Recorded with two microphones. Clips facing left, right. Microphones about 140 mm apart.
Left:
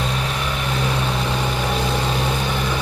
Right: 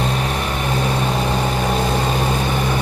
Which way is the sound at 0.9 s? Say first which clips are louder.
Right 1 dB; 20° right (ahead or behind).